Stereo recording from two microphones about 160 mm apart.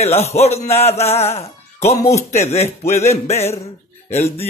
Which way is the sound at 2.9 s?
45° left (ahead or behind).